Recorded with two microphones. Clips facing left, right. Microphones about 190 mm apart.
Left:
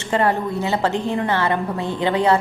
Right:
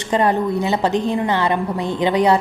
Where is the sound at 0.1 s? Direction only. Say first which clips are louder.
Right 2 dB; 20° right (ahead or behind).